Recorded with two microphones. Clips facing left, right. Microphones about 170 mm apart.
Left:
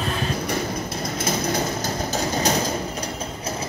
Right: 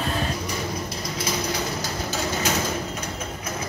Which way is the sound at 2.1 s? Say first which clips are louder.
Left 3 dB; 40° left (ahead or behind).